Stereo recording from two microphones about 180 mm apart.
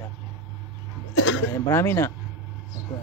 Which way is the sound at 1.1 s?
90° left.